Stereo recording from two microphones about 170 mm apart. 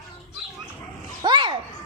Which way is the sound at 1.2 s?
25° right (ahead or behind).